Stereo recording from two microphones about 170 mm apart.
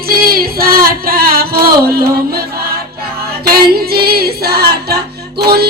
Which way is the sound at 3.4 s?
65° right (ahead or behind).